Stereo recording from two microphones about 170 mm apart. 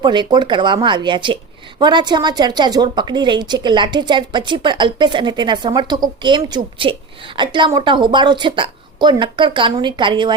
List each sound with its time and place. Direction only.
0.0 s a woman's voice: 25° right (ahead or behind)